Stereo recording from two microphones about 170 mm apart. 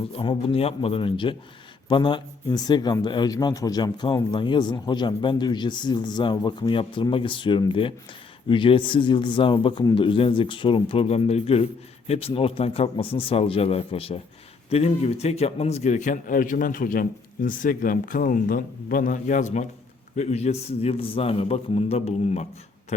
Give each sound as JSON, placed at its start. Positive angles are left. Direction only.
{"t": 0.1, "sound": "a man's voice", "side_deg": 35}